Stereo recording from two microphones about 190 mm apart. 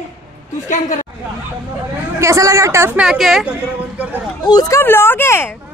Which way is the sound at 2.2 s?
15° right (ahead or behind).